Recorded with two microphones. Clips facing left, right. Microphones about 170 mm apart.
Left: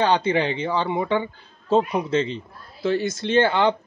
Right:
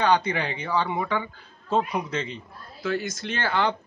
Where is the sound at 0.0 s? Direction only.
25° left (ahead or behind).